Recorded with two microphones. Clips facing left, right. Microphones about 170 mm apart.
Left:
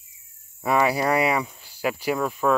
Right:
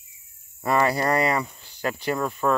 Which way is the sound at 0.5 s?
5° left (ahead or behind).